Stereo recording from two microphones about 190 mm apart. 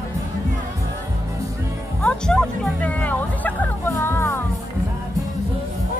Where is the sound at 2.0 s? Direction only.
5° left (ahead or behind).